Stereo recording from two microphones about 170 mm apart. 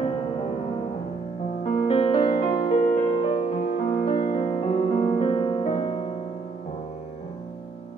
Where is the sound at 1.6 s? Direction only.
35° left (ahead or behind).